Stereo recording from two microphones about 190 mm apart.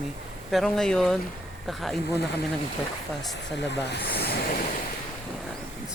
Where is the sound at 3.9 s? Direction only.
55° left (ahead or behind).